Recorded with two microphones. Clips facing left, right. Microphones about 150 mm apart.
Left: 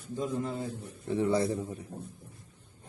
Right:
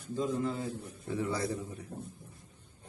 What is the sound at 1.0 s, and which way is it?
Speech, 25° left (ahead or behind).